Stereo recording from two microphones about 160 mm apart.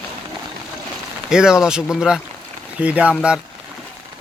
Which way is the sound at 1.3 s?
5° right (ahead or behind).